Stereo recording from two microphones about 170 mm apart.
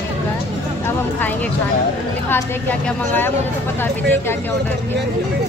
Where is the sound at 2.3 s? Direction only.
10° left (ahead or behind).